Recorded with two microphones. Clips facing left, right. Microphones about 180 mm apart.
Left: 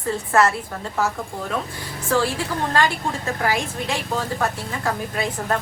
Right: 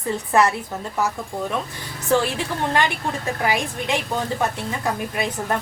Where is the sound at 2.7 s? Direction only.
20° right (ahead or behind).